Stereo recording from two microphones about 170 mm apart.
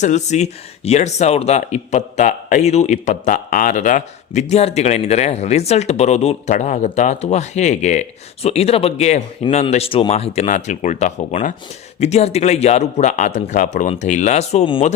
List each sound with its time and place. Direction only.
0.0 s speech: 45° left (ahead or behind)